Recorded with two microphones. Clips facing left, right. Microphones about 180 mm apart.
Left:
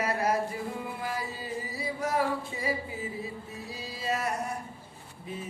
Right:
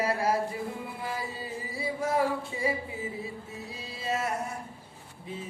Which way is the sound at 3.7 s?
25° right (ahead or behind).